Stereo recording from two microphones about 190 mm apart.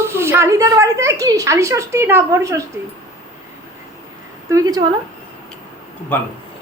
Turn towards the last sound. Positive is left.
turn(degrees=10)  # may be behind; listen again after turning